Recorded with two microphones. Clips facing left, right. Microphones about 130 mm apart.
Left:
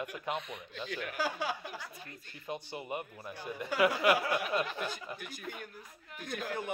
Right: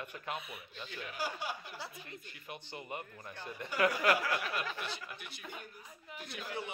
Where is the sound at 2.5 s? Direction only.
20° left (ahead or behind).